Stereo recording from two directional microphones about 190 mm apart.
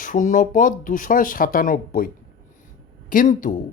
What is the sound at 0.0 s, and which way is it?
Speech, 40° left (ahead or behind).